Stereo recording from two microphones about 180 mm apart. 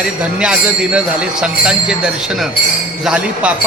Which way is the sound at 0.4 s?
5° right (ahead or behind).